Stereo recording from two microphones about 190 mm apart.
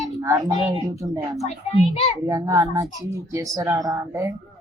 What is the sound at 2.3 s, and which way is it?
A woman's voice, 15° right (ahead or behind).